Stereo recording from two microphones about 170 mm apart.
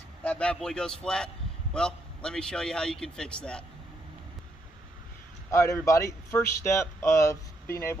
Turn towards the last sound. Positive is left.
turn(degrees=15)  # may be behind; listen again after turning